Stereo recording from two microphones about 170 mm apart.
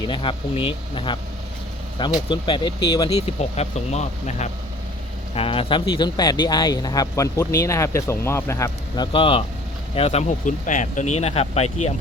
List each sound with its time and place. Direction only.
0.0 s speech: 30° left (ahead or behind)
9.1 s speech: 30° left (ahead or behind)